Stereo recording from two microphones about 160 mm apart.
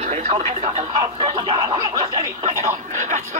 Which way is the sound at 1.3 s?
25° right (ahead or behind).